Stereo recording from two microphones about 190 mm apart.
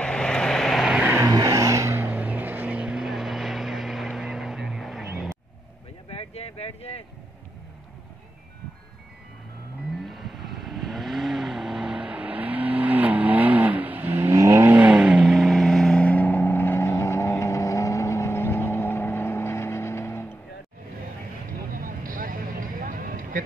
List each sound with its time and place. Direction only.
0.0 s vehicle: 5° left (ahead or behind)
6.0 s vehicle: 30° left (ahead or behind)
10.0 s vehicle: centre (ahead or behind)
21.7 s vehicle: 45° right (ahead or behind)